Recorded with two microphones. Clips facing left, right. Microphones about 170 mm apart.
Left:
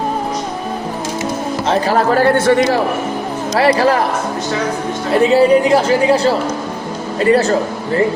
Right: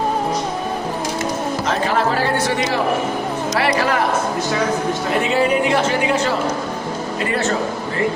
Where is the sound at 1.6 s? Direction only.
30° left (ahead or behind).